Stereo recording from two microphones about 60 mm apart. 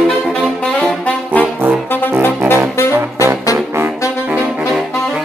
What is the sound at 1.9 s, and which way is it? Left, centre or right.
Brass instrument, left.